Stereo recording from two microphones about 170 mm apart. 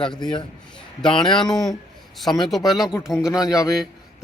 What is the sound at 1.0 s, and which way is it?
A man's voice, 5° left (ahead or behind).